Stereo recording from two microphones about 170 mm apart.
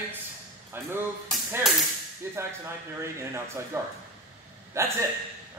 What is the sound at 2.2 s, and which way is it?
A man's voice, 15° right (ahead or behind).